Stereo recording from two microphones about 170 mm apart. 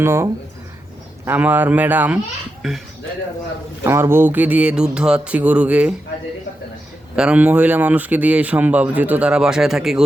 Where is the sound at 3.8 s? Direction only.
15° right (ahead or behind).